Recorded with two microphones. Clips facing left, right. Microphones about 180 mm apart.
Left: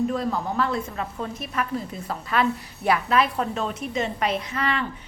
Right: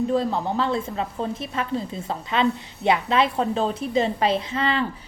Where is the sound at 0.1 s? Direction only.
30° right (ahead or behind).